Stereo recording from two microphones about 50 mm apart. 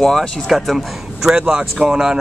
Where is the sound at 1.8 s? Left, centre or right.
Centre.